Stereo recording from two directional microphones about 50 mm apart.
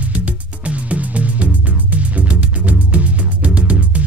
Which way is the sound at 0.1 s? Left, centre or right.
Right.